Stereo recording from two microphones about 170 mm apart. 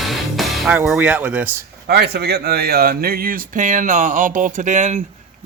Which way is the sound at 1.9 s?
75° right (ahead or behind).